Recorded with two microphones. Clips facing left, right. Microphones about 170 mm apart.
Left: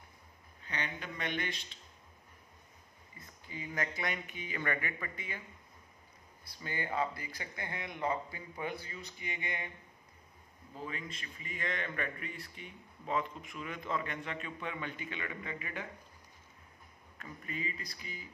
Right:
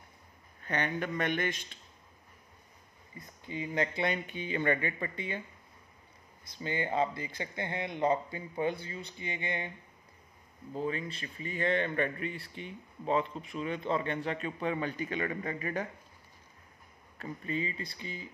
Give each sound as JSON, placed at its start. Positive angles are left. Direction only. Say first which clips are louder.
{"t": 0.6, "sound": "speech", "louder": "right 8 dB", "side_deg": -55}
{"t": 3.4, "sound": "speech", "louder": "right 6 dB", "side_deg": -25}
{"t": 6.6, "sound": "speech", "louder": "right 5 dB", "side_deg": -25}
{"t": 10.7, "sound": "a man's voice", "louder": "right 8 dB", "side_deg": -35}
{"t": 17.2, "sound": "speech", "louder": "right 7 dB", "side_deg": -30}